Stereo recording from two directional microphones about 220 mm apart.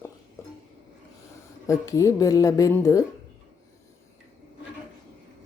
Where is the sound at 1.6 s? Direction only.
15° left (ahead or behind).